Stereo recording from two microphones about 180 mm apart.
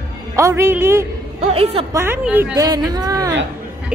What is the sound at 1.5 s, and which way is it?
Speech, 35° right (ahead or behind).